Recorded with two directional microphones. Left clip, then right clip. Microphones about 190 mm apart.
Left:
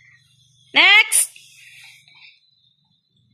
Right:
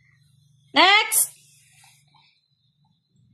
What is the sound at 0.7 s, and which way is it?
Speech, 15° left (ahead or behind).